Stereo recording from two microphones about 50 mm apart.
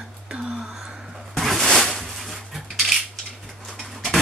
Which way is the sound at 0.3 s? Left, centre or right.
Centre.